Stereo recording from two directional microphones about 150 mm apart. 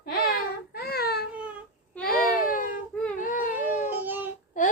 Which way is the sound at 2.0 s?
65° left (ahead or behind).